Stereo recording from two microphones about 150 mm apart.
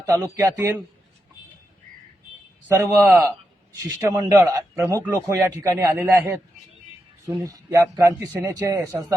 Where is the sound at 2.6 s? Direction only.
15° right (ahead or behind).